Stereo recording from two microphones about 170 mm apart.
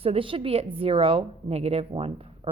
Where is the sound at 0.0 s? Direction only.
35° right (ahead or behind).